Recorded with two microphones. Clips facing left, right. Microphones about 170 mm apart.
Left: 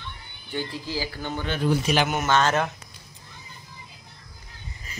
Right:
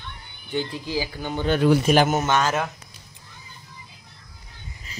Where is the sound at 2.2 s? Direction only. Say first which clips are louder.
Even; 10° right (ahead or behind).